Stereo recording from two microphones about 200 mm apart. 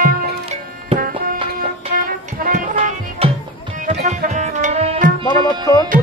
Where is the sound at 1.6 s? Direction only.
45° right (ahead or behind).